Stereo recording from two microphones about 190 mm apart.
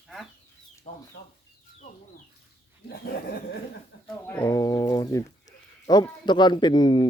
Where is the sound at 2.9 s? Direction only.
55° left (ahead or behind).